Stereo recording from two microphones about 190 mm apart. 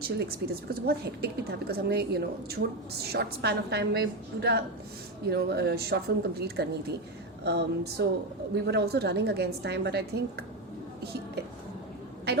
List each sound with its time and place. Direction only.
0.2 s a woman's voice: 55° right (ahead or behind)